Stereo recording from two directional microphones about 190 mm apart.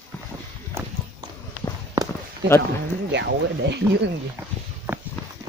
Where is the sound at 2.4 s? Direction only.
65° right (ahead or behind).